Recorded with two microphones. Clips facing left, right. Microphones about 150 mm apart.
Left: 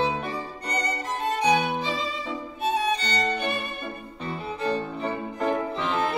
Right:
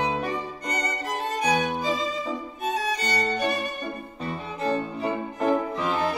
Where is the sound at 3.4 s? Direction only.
40° right (ahead or behind).